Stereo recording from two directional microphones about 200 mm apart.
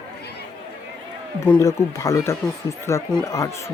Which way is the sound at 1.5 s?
15° left (ahead or behind).